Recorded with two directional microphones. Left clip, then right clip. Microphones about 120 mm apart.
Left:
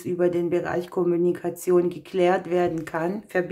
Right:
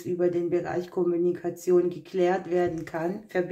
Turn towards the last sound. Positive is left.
turn(degrees=40)  # may be behind; listen again after turning